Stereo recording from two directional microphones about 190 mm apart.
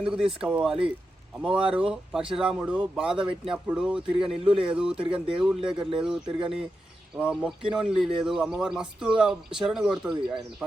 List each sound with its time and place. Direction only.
0.0 s speech: 5° right (ahead or behind)